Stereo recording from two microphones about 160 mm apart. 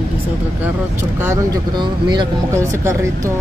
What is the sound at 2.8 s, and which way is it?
Speech, 15° right (ahead or behind).